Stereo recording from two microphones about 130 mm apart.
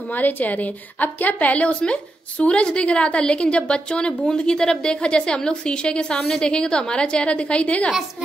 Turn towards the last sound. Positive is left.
turn(degrees=10)  # may be behind; listen again after turning